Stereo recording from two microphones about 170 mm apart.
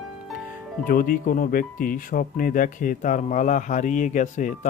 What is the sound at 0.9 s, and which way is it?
Speech, 55° left (ahead or behind).